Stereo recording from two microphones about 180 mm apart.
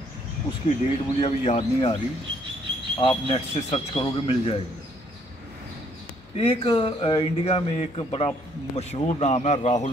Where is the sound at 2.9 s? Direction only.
30° left (ahead or behind).